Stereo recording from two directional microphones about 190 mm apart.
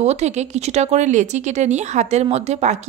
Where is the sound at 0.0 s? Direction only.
35° right (ahead or behind).